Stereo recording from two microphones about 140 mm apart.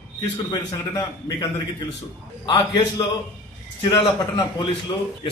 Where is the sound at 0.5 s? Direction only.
30° left (ahead or behind).